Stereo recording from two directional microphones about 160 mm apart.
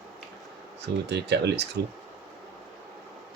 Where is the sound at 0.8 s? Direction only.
90° right.